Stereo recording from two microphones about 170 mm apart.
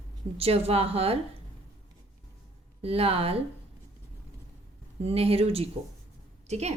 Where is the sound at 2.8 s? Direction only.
35° right (ahead or behind).